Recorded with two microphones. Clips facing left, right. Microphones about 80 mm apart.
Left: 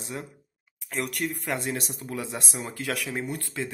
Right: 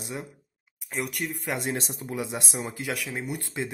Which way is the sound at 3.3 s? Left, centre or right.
Centre.